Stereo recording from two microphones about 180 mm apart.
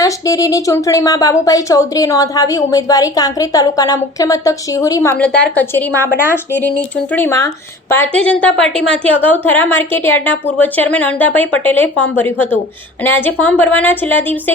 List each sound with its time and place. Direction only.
0.0 s a woman's voice: 20° left (ahead or behind)
5.1 s a woman's voice: 5° left (ahead or behind)